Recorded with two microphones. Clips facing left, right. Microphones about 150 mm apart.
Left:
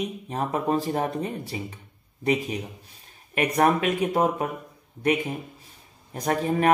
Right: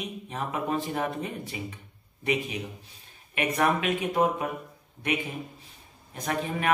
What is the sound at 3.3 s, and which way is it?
Speech, 40° left (ahead or behind).